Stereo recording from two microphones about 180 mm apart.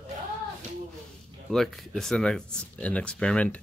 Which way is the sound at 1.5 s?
Centre (ahead or behind).